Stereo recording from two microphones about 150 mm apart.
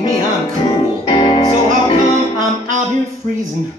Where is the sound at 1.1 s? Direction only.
35° left (ahead or behind).